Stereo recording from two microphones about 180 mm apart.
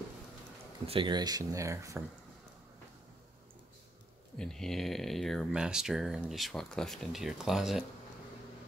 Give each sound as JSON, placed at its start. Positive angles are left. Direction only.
{"t": 0.8, "sound": "speech", "side_deg": -25}
{"t": 4.4, "sound": "speech", "side_deg": 0}